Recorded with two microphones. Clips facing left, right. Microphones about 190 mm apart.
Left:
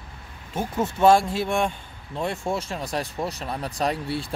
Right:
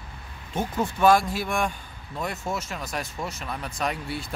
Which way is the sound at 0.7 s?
25° left (ahead or behind).